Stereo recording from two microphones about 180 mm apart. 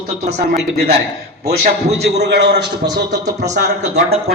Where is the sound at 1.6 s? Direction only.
35° right (ahead or behind).